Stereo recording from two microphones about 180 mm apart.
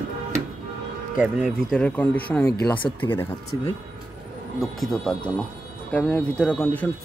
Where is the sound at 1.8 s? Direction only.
10° left (ahead or behind).